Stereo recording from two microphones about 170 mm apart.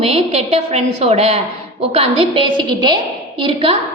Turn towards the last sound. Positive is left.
turn(degrees=-30)  # may be behind; listen again after turning